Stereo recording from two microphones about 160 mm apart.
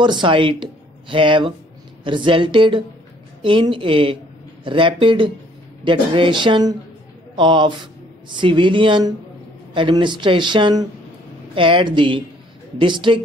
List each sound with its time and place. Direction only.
0.0 s speech: 30° right (ahead or behind)